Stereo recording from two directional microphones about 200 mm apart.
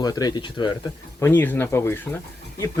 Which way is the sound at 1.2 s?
10° left (ahead or behind).